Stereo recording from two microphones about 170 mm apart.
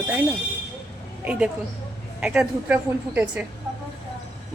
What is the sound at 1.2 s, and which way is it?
A woman's voice, 10° right (ahead or behind).